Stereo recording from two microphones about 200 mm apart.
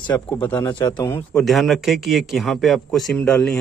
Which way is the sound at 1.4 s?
Centre (ahead or behind).